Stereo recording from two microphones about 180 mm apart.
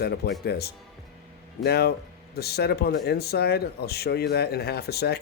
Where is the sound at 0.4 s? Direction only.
60° left (ahead or behind).